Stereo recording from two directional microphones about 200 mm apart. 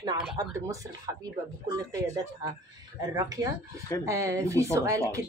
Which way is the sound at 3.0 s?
20° right (ahead or behind).